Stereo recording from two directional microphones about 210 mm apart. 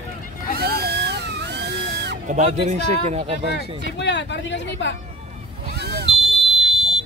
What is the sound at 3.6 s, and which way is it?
Speech, 55° left (ahead or behind).